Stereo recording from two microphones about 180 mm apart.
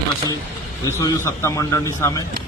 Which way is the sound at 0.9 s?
15° left (ahead or behind).